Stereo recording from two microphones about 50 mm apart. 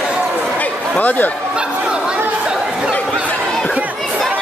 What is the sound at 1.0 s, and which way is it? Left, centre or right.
Speech, left.